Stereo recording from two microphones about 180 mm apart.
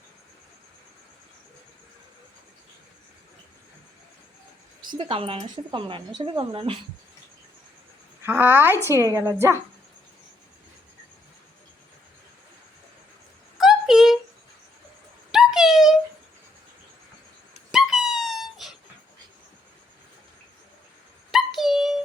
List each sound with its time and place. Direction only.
4.8 s speech: 25° right (ahead or behind)
8.2 s a woman's voice: 10° right (ahead or behind)
13.6 s a sound: centre (ahead or behind)
15.3 s a sound: centre (ahead or behind)
17.7 s dog: centre (ahead or behind)
21.3 s dog: centre (ahead or behind)